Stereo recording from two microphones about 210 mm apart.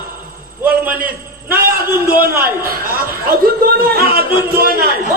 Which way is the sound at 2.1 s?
45° right (ahead or behind).